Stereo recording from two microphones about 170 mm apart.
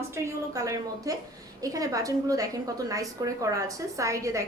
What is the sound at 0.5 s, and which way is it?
A woman's voice, 20° right (ahead or behind).